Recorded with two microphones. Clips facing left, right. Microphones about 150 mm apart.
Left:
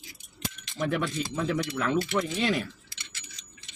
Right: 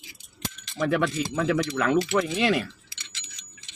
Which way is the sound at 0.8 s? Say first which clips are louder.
Right 4 dB; 75° right (ahead or behind).